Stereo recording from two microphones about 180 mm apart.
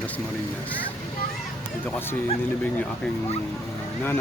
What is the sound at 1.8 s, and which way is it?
Speech, 10° left (ahead or behind).